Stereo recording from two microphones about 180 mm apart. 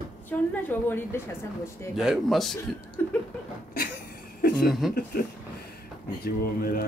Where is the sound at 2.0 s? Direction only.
Centre (ahead or behind).